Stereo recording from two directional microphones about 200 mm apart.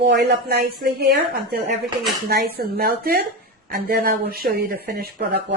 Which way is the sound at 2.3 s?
50° right (ahead or behind).